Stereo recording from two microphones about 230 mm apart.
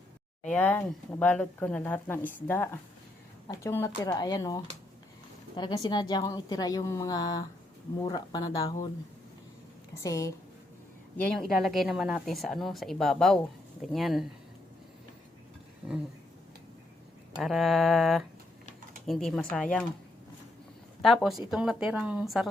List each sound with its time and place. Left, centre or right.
0.4 s speech: centre
9.9 s speech: centre
11.2 s speech: centre
17.4 s speech: centre
21.0 s speech: centre